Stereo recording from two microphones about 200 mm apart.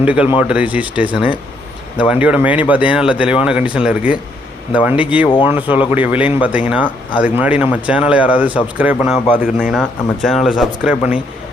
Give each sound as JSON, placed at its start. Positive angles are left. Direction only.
{"t": 0.0, "sound": "a man's voice", "side_deg": -5}
{"t": 1.1, "sound": "speech", "side_deg": 25}
{"t": 2.0, "sound": "a man's voice", "side_deg": -5}